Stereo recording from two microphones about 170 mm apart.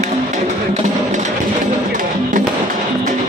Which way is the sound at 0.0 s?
45° right (ahead or behind).